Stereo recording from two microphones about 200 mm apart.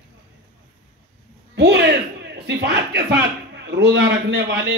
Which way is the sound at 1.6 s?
60° right (ahead or behind).